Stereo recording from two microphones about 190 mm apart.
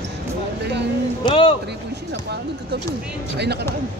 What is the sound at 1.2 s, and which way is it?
Speech, 30° left (ahead or behind).